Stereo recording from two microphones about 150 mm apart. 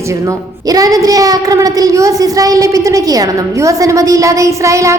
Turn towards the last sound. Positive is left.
turn(degrees=-20)  # may be behind; listen again after turning